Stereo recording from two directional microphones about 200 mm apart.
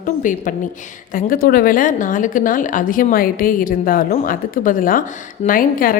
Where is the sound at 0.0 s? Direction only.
40° left (ahead or behind).